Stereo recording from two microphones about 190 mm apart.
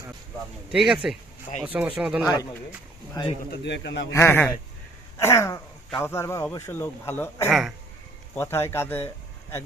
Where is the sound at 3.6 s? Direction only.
70° left (ahead or behind).